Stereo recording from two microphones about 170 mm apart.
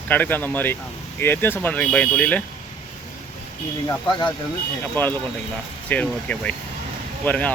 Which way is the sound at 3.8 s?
25° left (ahead or behind).